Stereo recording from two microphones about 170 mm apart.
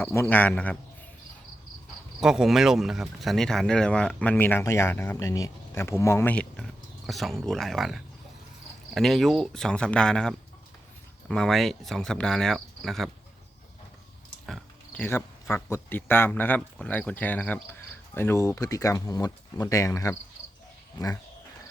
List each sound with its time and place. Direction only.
0.0 s speech: 15° left (ahead or behind)
2.2 s speech: 5° right (ahead or behind)
14.4 s speech: 5° left (ahead or behind)